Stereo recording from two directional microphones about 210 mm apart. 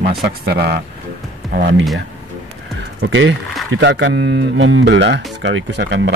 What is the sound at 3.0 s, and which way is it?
Speech, 60° right (ahead or behind).